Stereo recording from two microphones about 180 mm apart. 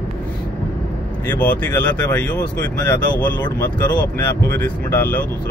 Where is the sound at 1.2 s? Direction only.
10° left (ahead or behind).